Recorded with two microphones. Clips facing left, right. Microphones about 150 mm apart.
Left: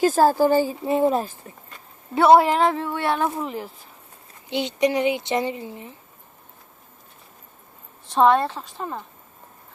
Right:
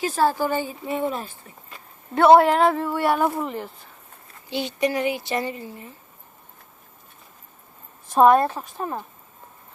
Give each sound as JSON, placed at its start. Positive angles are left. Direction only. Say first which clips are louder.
{"t": 0.0, "sound": "speech", "louder": "left 5 dB", "side_deg": 40}
{"t": 2.1, "sound": "a woman's voice", "louder": "right 1 dB", "side_deg": 0}
{"t": 4.4, "sound": "speech", "louder": "left 2 dB", "side_deg": 20}
{"t": 8.1, "sound": "speech", "louder": "right 2 dB", "side_deg": -10}